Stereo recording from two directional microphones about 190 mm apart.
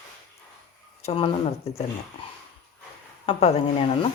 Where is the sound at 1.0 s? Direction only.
30° left (ahead or behind).